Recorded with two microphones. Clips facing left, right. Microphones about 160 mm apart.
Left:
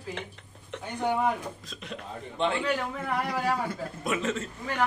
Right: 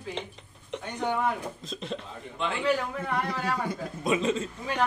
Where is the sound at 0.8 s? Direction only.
10° left (ahead or behind).